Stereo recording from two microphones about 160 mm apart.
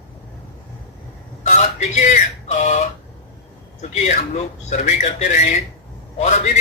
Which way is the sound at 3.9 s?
45° left (ahead or behind).